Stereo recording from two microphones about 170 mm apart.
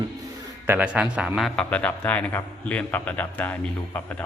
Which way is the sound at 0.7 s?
10° right (ahead or behind).